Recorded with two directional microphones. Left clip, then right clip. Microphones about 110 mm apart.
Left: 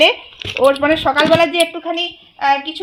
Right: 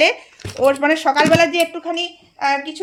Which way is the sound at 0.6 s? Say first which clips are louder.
Left 2 dB; 20° left (ahead or behind).